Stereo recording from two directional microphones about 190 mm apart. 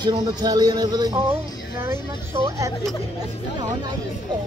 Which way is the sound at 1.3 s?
10° right (ahead or behind).